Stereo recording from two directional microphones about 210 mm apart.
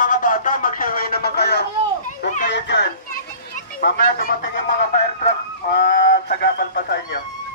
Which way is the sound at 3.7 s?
45° left (ahead or behind).